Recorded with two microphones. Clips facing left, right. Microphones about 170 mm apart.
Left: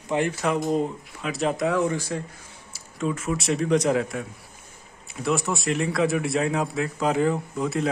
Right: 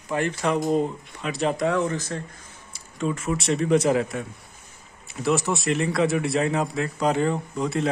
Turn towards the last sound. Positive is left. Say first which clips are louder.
# even
turn(degrees=0)  # may be behind; listen again after turning